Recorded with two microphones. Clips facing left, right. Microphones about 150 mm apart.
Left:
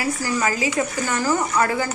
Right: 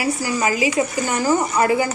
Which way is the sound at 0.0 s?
15° right (ahead or behind).